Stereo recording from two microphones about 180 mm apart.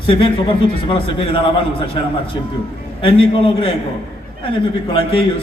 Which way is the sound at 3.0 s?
30° left (ahead or behind).